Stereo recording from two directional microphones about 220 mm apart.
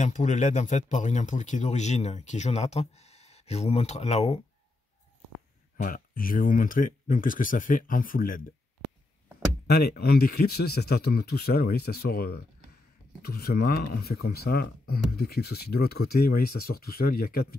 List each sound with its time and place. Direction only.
0.0 s speech: 35° left (ahead or behind)
5.8 s speech: 40° left (ahead or behind)
9.7 s speech: 45° left (ahead or behind)